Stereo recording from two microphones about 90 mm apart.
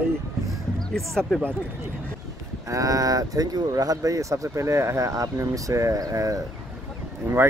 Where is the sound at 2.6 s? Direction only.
40° right (ahead or behind).